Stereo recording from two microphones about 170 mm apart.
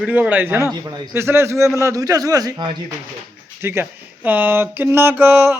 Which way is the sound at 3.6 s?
10° right (ahead or behind).